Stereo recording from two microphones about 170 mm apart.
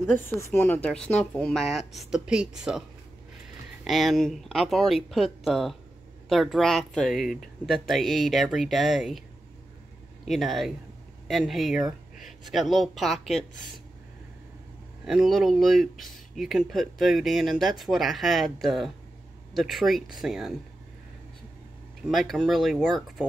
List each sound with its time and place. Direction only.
0.0 s speech: 10° left (ahead or behind); by 2.8 s 5° right (ahead or behind)
3.8 s speech: centre (ahead or behind)
10.2 s speech: centre (ahead or behind)
15.0 s speech: centre (ahead or behind)
22.0 s speech: centre (ahead or behind)